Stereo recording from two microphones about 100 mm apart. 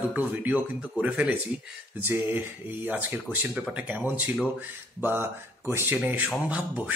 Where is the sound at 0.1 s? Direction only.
15° right (ahead or behind).